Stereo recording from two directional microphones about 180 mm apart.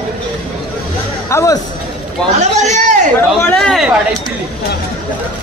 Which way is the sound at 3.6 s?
Centre (ahead or behind).